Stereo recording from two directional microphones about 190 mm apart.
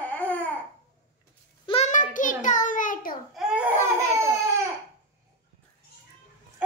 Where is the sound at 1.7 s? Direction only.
35° left (ahead or behind).